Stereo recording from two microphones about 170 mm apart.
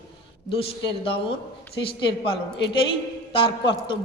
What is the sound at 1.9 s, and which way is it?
Speech, 30° left (ahead or behind).